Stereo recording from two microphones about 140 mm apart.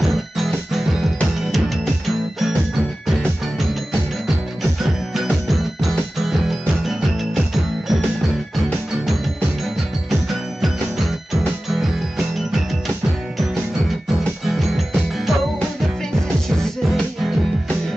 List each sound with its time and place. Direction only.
0.0 s music: centre (ahead or behind)
3.1 s music: centre (ahead or behind)
5.1 s music: centre (ahead or behind)
10.6 s music: centre (ahead or behind)
14.4 s music: centre (ahead or behind)
16.4 s music: 5° left (ahead or behind)